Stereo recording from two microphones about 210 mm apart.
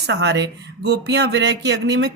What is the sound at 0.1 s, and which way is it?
Speech, 55° right (ahead or behind).